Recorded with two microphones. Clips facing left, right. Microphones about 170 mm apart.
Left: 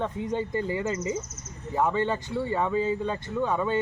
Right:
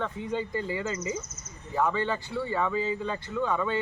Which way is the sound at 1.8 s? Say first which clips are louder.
Left 2 dB; 20° left (ahead or behind).